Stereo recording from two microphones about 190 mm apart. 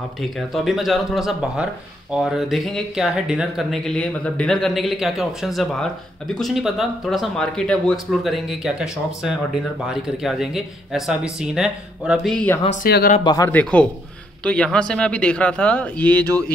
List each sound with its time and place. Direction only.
0.2 s speech: centre (ahead or behind)
12.8 s speech: 50° left (ahead or behind)
13.2 s speech: 20° left (ahead or behind)
13.5 s a man's voice: 5° left (ahead or behind)